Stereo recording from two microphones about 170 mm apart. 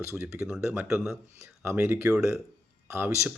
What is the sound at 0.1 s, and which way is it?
Speech, 15° right (ahead or behind).